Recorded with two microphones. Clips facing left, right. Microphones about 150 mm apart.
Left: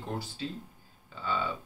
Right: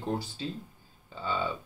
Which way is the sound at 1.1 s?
30° right (ahead or behind).